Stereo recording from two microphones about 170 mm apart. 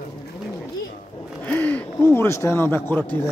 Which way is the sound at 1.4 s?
10° left (ahead or behind).